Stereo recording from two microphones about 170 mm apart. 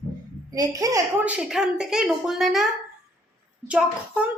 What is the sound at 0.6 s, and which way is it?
Speech, 20° right (ahead or behind).